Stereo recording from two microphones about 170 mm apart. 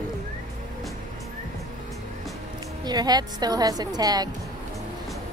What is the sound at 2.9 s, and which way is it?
A woman's voice, 25° right (ahead or behind).